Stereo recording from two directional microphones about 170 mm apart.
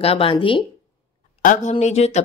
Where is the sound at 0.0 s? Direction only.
35° left (ahead or behind).